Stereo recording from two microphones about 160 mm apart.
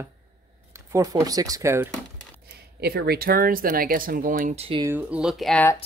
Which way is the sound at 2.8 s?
85° right.